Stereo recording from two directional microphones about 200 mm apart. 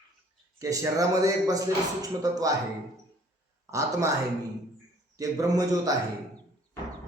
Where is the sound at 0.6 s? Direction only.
15° right (ahead or behind).